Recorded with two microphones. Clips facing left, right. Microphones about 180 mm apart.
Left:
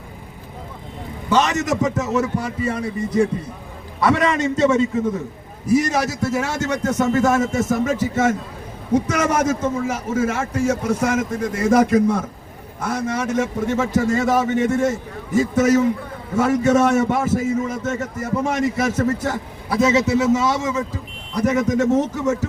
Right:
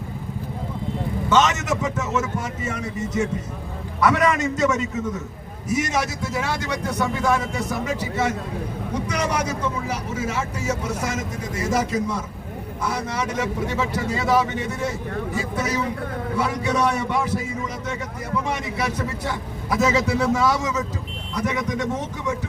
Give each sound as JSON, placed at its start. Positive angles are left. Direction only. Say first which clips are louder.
{"t": 1.3, "sound": "a man's voice", "louder": "left 2 dB", "side_deg": 35}
{"t": 19.7, "sound": "a man's voice", "louder": "left 4 dB", "side_deg": 25}
{"t": 21.3, "sound": "a man's voice", "louder": "left 7 dB", "side_deg": 40}